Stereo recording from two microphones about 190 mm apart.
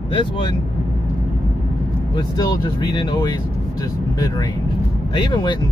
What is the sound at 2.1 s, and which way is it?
Speech, 20° left (ahead or behind).